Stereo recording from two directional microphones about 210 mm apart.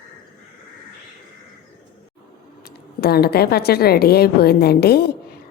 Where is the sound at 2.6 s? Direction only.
50° left (ahead or behind).